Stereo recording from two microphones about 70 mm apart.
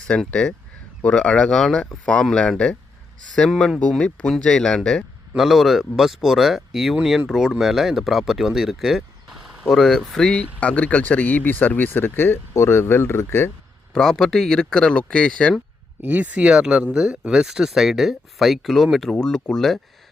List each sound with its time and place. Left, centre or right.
0.3 s speech: centre
4.0 s speech: centre
5.4 s speech: centre
9.6 s speech: centre
10.6 s speech: left
13.9 s speech: centre
16.0 s speech: right; by 19.8 s centre